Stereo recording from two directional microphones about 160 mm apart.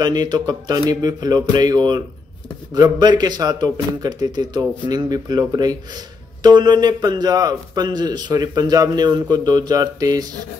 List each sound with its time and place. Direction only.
0.0 s a man's voice: 25° right (ahead or behind)